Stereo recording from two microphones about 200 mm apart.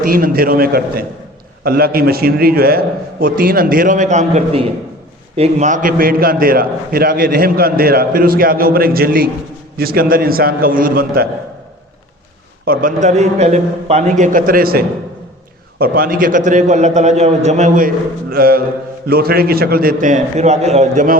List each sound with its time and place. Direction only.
0.0 s a man's voice: 45° right (ahead or behind)
12.6 s a man's voice: 45° right (ahead or behind)